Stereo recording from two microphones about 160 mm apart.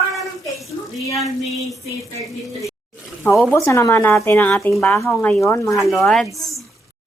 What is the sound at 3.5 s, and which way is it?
Speech, 15° left (ahead or behind).